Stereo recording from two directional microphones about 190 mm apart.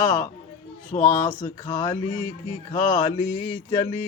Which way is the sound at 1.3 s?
20° left (ahead or behind).